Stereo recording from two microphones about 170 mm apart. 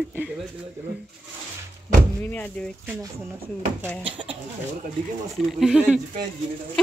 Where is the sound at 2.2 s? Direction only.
10° left (ahead or behind).